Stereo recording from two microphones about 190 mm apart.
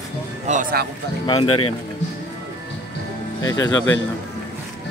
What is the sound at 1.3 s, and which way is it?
Speech, 30° left (ahead or behind).